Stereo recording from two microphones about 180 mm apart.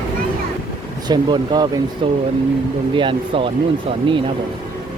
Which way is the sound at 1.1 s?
25° right (ahead or behind).